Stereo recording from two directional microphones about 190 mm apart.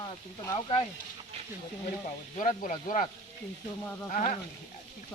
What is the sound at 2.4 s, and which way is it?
Speech, 45° left (ahead or behind).